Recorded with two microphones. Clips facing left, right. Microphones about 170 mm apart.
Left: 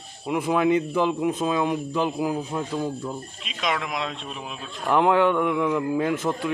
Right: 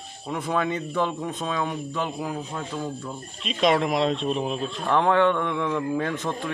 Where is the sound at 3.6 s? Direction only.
30° right (ahead or behind).